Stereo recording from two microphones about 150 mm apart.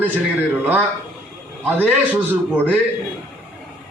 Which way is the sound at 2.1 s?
10° right (ahead or behind).